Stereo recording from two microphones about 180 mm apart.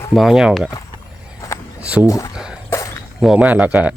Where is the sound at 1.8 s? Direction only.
5° right (ahead or behind).